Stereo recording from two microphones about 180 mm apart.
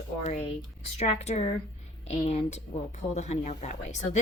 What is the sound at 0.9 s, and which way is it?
Speech, 35° left (ahead or behind).